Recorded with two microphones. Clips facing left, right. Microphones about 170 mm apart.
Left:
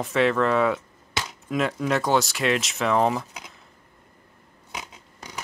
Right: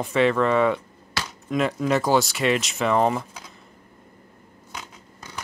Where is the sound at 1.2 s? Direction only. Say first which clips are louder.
Even; 20° left (ahead or behind).